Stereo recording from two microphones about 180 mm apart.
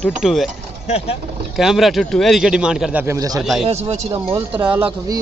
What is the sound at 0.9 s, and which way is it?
Speech, 35° left (ahead or behind).